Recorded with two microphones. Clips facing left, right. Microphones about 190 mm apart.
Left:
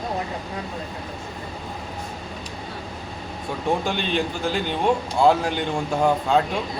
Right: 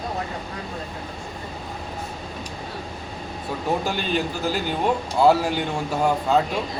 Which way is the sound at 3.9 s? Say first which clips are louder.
Even; 5° right (ahead or behind).